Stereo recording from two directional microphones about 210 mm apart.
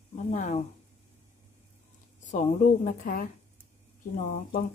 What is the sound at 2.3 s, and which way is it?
A woman's voice, 40° left (ahead or behind).